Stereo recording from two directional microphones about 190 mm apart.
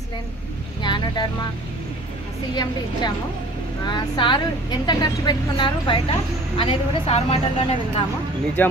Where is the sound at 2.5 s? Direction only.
20° left (ahead or behind).